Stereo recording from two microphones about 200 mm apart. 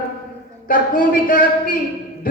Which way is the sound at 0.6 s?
45° left (ahead or behind).